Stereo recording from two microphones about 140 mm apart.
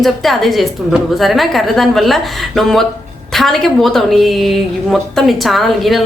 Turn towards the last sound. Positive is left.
turn(degrees=0)  # may be behind; listen again after turning